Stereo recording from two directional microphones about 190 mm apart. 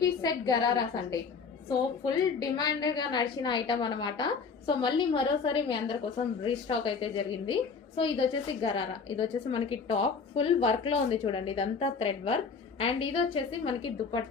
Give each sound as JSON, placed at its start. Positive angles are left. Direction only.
{"t": 0.2, "sound": "a woman's voice", "side_deg": 20}